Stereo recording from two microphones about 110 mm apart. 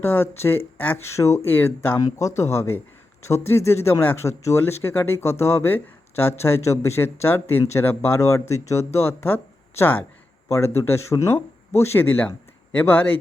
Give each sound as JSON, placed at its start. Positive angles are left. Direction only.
{"t": 0.0, "sound": "speech", "side_deg": 20}